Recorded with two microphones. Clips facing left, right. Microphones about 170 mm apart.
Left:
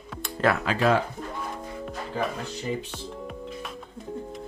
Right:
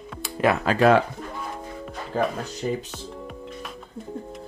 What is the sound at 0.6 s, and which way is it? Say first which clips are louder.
Speech: right 5 dB; 45° right (ahead or behind).